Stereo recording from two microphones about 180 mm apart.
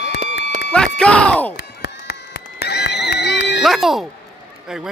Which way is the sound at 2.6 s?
65° left (ahead or behind).